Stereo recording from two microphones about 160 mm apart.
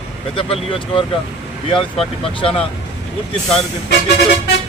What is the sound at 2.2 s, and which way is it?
Speech, 35° left (ahead or behind).